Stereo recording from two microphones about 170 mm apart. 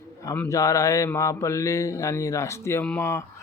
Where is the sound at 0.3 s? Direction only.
20° left (ahead or behind).